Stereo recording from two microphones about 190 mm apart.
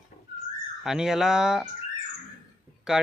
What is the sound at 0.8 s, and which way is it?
Speech, centre (ahead or behind).